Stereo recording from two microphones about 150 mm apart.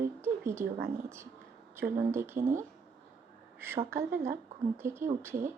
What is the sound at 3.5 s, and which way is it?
A woman's voice, 15° right (ahead or behind).